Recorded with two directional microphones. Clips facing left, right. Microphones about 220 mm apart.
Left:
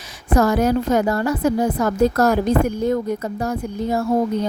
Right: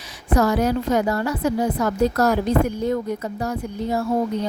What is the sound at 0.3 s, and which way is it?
Speech, 50° left (ahead or behind).